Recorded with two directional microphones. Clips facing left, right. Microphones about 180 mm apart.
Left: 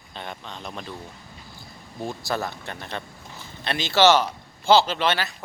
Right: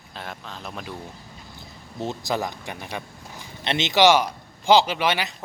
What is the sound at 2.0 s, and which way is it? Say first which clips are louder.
Speech: right 2 dB; 20° right (ahead or behind).